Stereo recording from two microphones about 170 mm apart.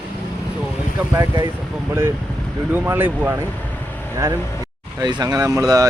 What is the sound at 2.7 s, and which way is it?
Speech, 10° right (ahead or behind).